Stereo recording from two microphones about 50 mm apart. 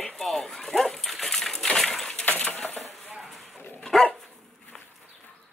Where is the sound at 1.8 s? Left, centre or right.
Centre.